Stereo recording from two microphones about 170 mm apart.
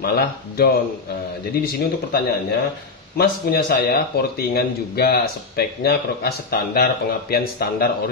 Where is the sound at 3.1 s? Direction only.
70° left (ahead or behind).